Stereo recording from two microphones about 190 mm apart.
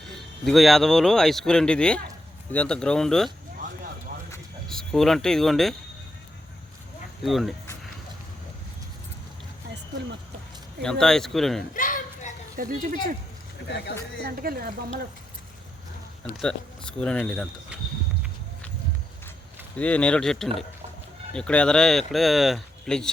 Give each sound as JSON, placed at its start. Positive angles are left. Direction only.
{"t": 0.4, "sound": "speech", "side_deg": 0}
{"t": 4.7, "sound": "speech", "side_deg": 0}
{"t": 7.3, "sound": "speech", "side_deg": 0}
{"t": 10.8, "sound": "speech", "side_deg": 5}
{"t": 11.7, "sound": "a sound", "side_deg": 45}
{"t": 12.5, "sound": "speech", "side_deg": -45}
{"t": 14.3, "sound": "speech", "side_deg": -55}
{"t": 17.0, "sound": "speech", "side_deg": 5}
{"t": 19.7, "sound": "speech", "side_deg": 5}